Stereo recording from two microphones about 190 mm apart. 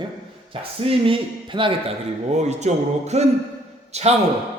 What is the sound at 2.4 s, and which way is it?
A man's voice, 35° right (ahead or behind).